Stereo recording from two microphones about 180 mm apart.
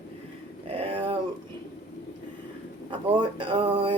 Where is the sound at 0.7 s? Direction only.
30° right (ahead or behind).